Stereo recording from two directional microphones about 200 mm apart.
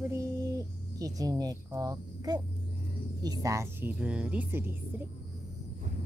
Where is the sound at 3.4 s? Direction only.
15° right (ahead or behind).